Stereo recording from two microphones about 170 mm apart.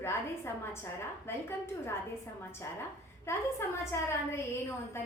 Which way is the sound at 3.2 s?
15° left (ahead or behind).